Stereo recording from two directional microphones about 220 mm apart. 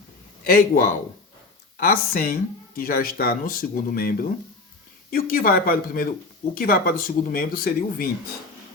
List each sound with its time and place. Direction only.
0.4 s speech: 40° left (ahead or behind)